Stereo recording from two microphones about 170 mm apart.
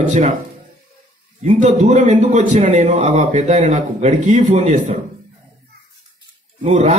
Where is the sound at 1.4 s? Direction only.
45° right (ahead or behind).